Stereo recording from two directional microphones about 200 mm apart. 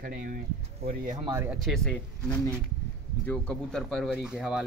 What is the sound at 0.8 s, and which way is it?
Speech, 30° right (ahead or behind).